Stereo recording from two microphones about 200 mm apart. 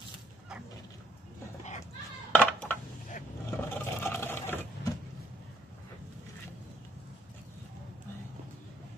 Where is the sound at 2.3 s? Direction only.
10° left (ahead or behind).